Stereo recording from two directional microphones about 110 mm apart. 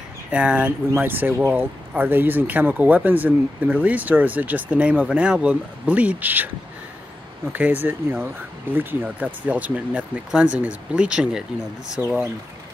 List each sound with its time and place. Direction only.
0.3 s speech: 15° right (ahead or behind)
7.5 s speech: 15° right (ahead or behind)